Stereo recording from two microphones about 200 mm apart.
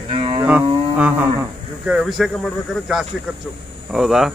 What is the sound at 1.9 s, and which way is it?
Speech, centre (ahead or behind).